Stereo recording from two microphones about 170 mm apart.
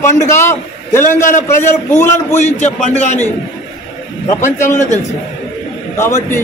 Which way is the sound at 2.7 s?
45° left (ahead or behind).